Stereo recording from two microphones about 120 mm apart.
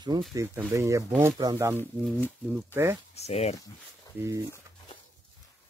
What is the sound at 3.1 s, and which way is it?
Speech, 65° left (ahead or behind).